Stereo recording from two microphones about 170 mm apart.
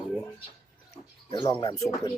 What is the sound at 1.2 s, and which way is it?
Speech, 25° left (ahead or behind).